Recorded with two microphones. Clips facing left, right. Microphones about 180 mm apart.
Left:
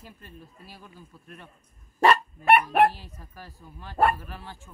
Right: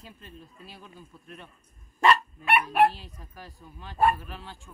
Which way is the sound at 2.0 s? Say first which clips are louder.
Left 3 dB; 50° left (ahead or behind).